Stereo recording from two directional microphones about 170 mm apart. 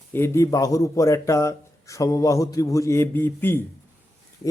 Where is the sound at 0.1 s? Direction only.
15° left (ahead or behind).